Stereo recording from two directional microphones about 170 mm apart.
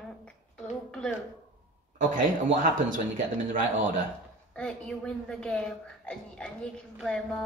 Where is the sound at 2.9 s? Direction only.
50° right (ahead or behind).